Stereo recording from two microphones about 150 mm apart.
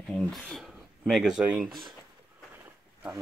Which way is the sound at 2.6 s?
10° right (ahead or behind).